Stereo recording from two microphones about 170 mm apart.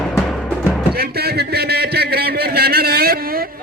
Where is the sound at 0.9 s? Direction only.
70° right (ahead or behind).